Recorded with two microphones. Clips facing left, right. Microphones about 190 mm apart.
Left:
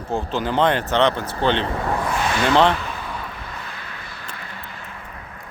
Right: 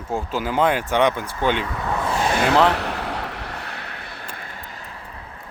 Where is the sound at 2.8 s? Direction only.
70° right (ahead or behind); by 4.5 s 55° right (ahead or behind).